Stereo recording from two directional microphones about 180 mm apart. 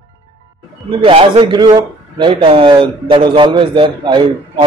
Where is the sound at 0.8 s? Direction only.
30° right (ahead or behind).